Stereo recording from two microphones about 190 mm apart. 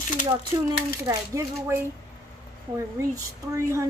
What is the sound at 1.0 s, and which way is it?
Speech, 15° right (ahead or behind).